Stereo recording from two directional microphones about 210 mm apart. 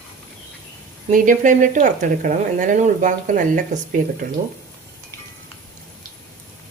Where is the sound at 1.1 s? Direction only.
40° right (ahead or behind).